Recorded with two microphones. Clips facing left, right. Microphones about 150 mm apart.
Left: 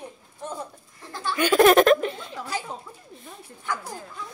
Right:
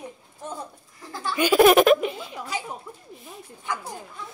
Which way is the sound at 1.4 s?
10° right (ahead or behind).